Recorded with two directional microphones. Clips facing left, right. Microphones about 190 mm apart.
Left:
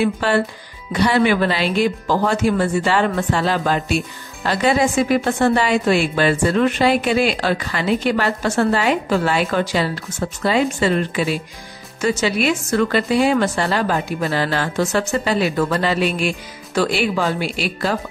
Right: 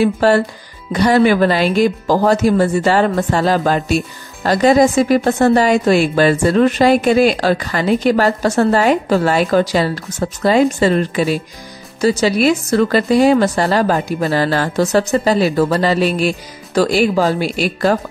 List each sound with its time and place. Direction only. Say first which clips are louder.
0.0 s speech: right 5 dB; 40° right (ahead or behind)